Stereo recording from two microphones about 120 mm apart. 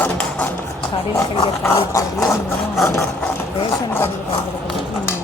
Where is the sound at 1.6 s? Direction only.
25° left (ahead or behind).